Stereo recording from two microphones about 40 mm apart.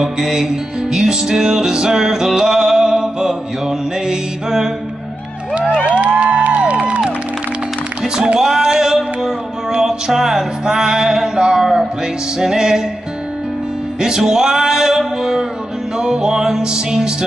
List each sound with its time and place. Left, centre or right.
0.0 s music: centre
5.9 s music: right
8.2 s music: centre
14.0 s music: centre